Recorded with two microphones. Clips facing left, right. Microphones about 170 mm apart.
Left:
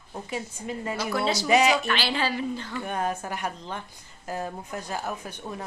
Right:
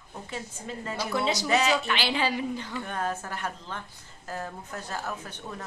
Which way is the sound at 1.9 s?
15° right (ahead or behind).